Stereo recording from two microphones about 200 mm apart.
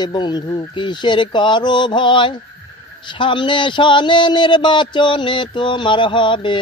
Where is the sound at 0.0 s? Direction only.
20° left (ahead or behind).